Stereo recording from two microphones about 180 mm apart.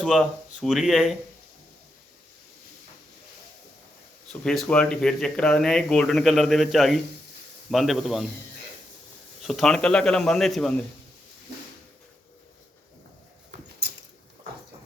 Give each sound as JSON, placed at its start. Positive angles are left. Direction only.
{"t": 0.0, "sound": "speech", "side_deg": 0}
{"t": 4.3, "sound": "speech", "side_deg": 5}
{"t": 9.4, "sound": "speech", "side_deg": 0}
{"t": 13.8, "sound": "a sound", "side_deg": -65}